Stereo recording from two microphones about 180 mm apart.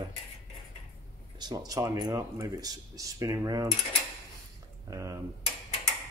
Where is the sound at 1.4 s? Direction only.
20° right (ahead or behind).